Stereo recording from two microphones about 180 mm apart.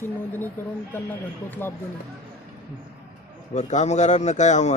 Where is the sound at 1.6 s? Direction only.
10° left (ahead or behind).